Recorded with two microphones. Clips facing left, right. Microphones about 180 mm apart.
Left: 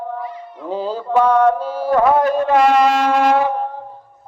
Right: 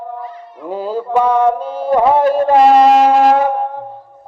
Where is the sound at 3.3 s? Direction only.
50° right (ahead or behind).